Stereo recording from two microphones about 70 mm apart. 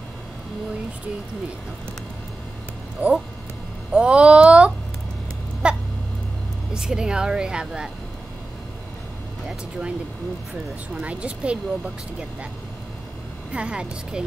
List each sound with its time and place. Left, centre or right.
3.0 s speech: right
5.6 s a sound: centre
6.7 s speech: centre
9.5 s speech: centre
11.0 s speech: centre
13.5 s speech: centre